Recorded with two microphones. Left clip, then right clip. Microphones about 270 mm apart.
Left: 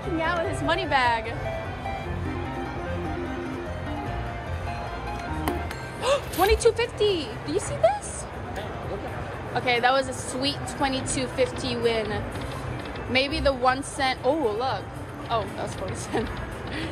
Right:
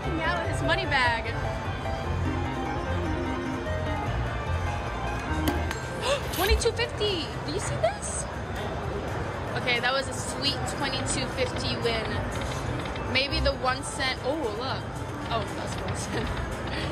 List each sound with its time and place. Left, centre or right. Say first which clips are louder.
0.2 s speech: left 2 dB; centre
6.4 s speech: left 6 dB; centre
9.5 s speech: left 5 dB; centre